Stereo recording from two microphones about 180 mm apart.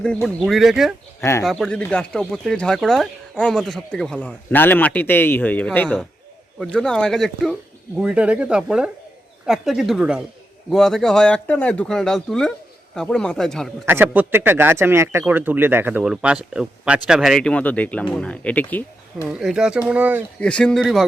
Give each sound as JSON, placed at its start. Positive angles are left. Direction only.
{"t": 0.0, "sound": "speech", "side_deg": 5}
{"t": 1.2, "sound": "speech", "side_deg": 15}
{"t": 1.5, "sound": "speech", "side_deg": 0}
{"t": 13.8, "sound": "speech", "side_deg": -10}
{"t": 19.3, "sound": "speech", "side_deg": -5}
{"t": 20.4, "sound": "speech", "side_deg": 5}